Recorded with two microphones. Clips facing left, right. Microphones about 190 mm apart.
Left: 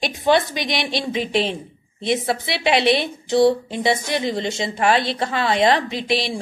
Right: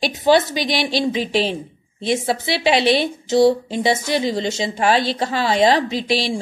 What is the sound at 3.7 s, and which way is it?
Speech, 25° right (ahead or behind).